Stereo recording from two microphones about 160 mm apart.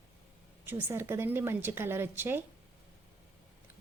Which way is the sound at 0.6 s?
10° right (ahead or behind).